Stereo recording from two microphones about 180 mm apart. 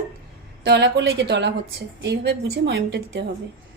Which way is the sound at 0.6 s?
75° right (ahead or behind).